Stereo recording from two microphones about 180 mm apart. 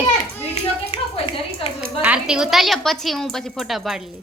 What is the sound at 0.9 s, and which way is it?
Clapping, 30° left (ahead or behind).